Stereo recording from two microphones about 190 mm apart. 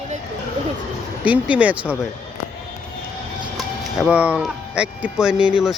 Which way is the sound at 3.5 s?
Centre (ahead or behind).